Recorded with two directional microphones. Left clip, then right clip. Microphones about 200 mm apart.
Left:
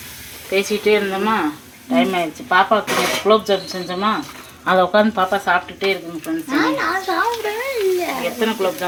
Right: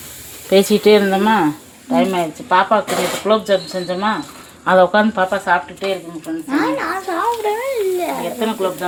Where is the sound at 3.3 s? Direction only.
15° right (ahead or behind).